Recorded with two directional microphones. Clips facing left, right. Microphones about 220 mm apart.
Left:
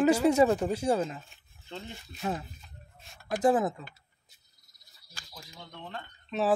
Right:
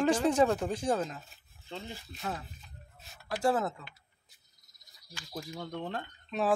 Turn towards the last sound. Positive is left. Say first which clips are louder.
# left 2 dB
turn(degrees=5)  # may be behind; listen again after turning